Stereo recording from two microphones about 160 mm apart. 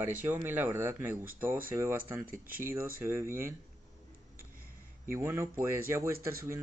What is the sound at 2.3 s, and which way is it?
Speech, 65° right (ahead or behind).